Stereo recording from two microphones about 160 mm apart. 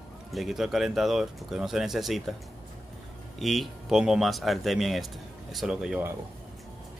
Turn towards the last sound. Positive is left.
turn(degrees=-5)  # may be behind; listen again after turning